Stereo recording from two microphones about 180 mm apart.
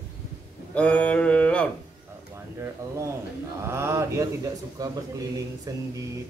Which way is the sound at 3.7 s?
15° right (ahead or behind).